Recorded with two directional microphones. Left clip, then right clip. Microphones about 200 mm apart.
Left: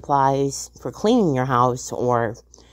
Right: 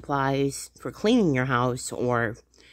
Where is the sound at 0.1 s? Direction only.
5° right (ahead or behind).